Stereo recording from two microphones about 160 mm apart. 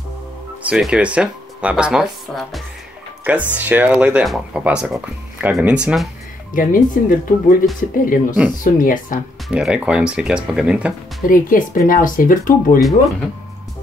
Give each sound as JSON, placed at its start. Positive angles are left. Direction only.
{"t": 0.7, "sound": "speech", "side_deg": -5}
{"t": 6.5, "sound": "speech", "side_deg": 60}
{"t": 9.5, "sound": "speech", "side_deg": -5}
{"t": 11.2, "sound": "speech", "side_deg": 60}